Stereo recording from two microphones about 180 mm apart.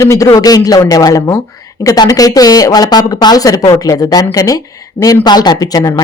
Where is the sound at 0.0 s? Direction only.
15° left (ahead or behind).